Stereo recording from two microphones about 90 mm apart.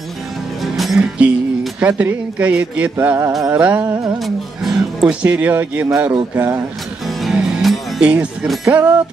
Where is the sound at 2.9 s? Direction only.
25° right (ahead or behind).